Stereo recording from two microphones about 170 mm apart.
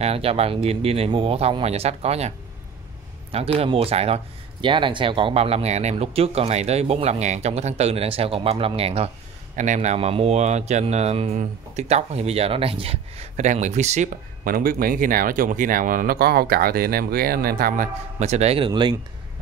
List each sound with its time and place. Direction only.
0.0 s speech: 35° right (ahead or behind)
14.4 s speech: 60° right (ahead or behind)
18.2 s speech: 40° right (ahead or behind)
18.7 s speech: 25° right (ahead or behind)